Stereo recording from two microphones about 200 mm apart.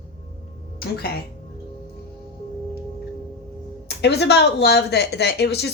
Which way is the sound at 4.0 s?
60° left (ahead or behind).